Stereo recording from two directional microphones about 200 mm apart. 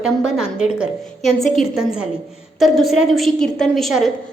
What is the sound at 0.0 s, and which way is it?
A woman's voice, 5° right (ahead or behind).